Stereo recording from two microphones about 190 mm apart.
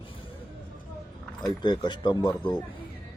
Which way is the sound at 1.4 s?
25° left (ahead or behind).